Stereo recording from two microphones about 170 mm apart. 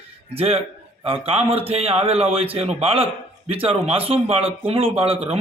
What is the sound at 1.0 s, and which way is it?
A man's voice, 35° right (ahead or behind).